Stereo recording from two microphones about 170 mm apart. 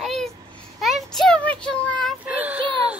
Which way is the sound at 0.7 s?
Centre (ahead or behind).